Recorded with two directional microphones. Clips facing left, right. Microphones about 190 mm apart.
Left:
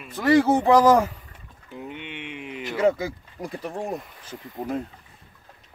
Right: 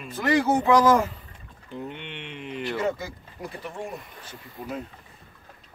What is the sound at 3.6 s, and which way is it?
Speech, 40° left (ahead or behind).